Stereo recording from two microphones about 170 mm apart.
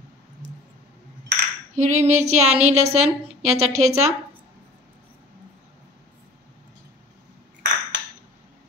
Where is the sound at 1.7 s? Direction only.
45° right (ahead or behind).